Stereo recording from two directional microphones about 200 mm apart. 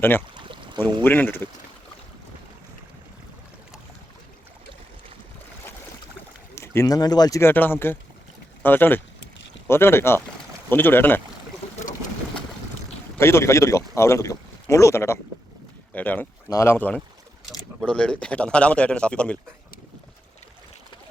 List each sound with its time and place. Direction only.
0.3 s a sound: 25° right (ahead or behind)
1.0 s speech: 10° left (ahead or behind)
6.6 s speech: 15° left (ahead or behind)
13.1 s speech: 15° left (ahead or behind)